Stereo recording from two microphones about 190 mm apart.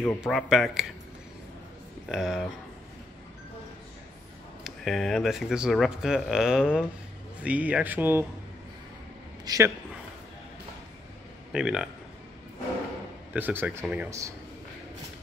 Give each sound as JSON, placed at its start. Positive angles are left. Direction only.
{"t": 0.2, "sound": "speech", "side_deg": 0}
{"t": 2.0, "sound": "speech", "side_deg": 0}
{"t": 4.6, "sound": "speech", "side_deg": 0}
{"t": 9.4, "sound": "speech", "side_deg": -20}
{"t": 11.5, "sound": "speech", "side_deg": -5}
{"t": 13.3, "sound": "speech", "side_deg": -10}